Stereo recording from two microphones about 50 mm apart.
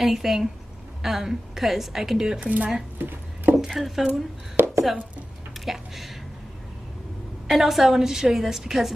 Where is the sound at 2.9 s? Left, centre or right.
Right.